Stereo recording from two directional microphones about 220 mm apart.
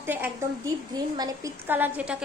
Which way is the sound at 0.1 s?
10° right (ahead or behind).